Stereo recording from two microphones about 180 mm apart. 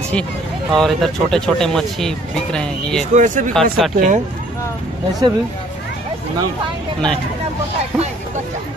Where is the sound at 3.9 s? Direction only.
45° right (ahead or behind).